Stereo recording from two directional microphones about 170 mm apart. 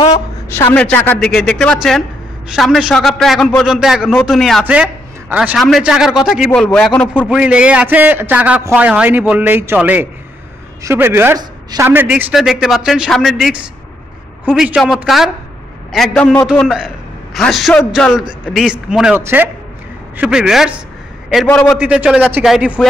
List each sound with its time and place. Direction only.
0.5 s a man's voice: 15° left (ahead or behind)
7.2 s a man's voice: 5° right (ahead or behind)
21.5 s a man's voice: 10° left (ahead or behind)
21.7 s a man's voice: 5° right (ahead or behind)